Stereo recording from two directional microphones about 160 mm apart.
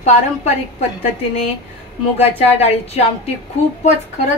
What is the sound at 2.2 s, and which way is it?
Speech, 40° left (ahead or behind).